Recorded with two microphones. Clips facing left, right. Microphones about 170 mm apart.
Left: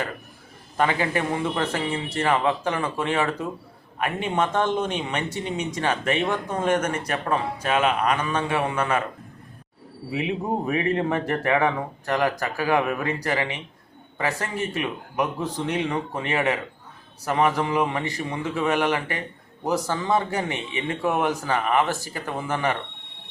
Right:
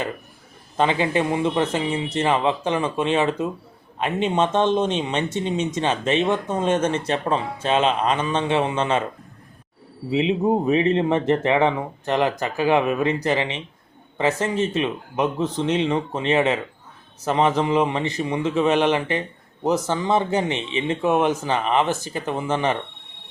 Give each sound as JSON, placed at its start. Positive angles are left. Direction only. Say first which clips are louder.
{"t": 0.8, "sound": "speech", "louder": "right 3 dB", "side_deg": -20}
{"t": 10.1, "sound": "speech", "louder": "right 6 dB", "side_deg": -20}